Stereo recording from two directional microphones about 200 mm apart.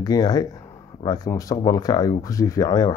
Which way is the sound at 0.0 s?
20° left (ahead or behind).